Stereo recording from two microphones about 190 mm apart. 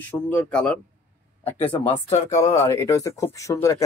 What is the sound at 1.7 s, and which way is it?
Speech, 20° left (ahead or behind).